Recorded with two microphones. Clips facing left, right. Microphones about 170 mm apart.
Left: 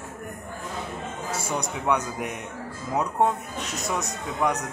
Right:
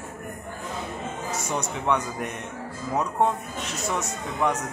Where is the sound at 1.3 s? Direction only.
10° left (ahead or behind).